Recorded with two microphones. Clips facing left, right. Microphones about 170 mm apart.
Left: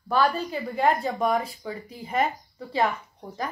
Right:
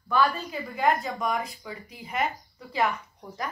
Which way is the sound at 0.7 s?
30° left (ahead or behind).